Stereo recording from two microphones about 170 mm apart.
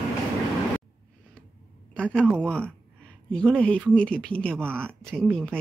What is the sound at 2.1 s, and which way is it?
Speech, 5° left (ahead or behind).